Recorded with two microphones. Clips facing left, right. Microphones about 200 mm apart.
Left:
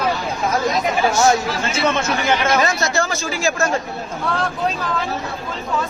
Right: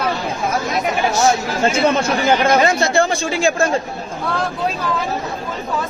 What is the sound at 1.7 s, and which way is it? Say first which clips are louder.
Speech: right 1 dB; 35° right (ahead or behind).